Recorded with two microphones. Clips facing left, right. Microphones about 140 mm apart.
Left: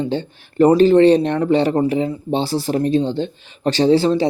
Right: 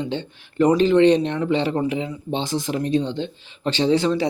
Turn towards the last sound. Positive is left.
turn(degrees=30)  # may be behind; listen again after turning